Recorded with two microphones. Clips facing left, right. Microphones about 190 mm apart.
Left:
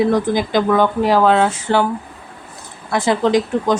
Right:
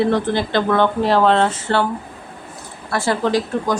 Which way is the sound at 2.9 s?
20° left (ahead or behind).